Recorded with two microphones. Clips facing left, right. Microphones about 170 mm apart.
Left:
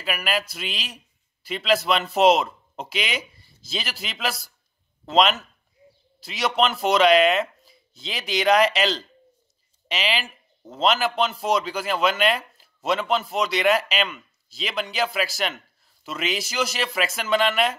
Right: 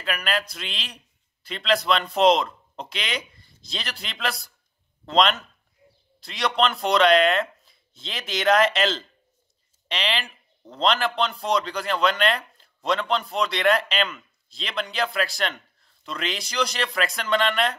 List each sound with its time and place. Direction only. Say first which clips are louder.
0.0 s a man's voice: left 1 dB; 5° left (ahead or behind)